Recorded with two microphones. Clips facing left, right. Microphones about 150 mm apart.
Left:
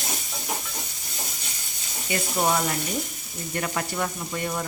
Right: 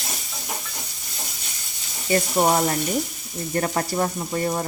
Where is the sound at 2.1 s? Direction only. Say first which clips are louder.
Right 5 dB; 35° right (ahead or behind).